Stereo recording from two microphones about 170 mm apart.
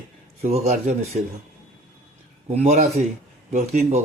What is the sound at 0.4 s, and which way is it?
Speech, 40° right (ahead or behind).